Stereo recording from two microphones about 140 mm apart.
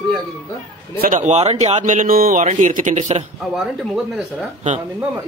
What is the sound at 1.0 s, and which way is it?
Speech, 60° right (ahead or behind).